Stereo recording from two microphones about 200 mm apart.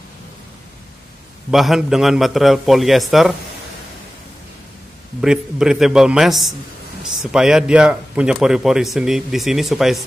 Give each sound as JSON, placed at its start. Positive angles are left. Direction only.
{"t": 1.5, "sound": "speech", "side_deg": 0}
{"t": 5.2, "sound": "speech", "side_deg": -5}